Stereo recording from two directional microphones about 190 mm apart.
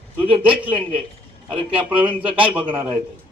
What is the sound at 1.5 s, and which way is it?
Speech, 5° right (ahead or behind).